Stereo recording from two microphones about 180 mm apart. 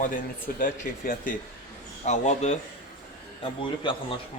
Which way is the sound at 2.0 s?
40° left (ahead or behind).